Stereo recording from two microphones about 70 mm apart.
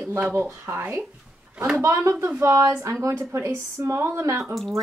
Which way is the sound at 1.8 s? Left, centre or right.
Right.